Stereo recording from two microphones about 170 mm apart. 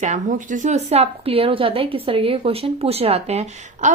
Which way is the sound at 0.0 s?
45° right (ahead or behind).